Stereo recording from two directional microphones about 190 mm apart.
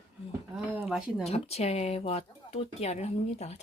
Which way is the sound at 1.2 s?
35° left (ahead or behind).